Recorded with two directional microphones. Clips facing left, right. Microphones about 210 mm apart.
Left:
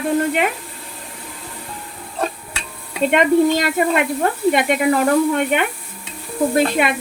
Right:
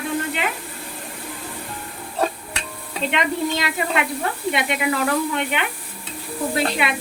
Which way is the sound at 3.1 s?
50° left (ahead or behind).